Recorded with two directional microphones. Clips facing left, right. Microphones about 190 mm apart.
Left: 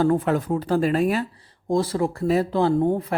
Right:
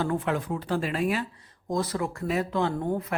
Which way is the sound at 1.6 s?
30° left (ahead or behind).